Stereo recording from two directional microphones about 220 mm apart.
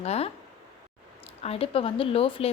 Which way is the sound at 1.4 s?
25° left (ahead or behind).